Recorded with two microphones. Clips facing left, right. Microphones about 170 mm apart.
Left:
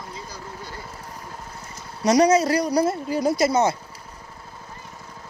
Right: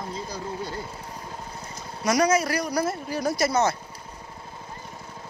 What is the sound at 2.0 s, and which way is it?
Speech, 35° left (ahead or behind).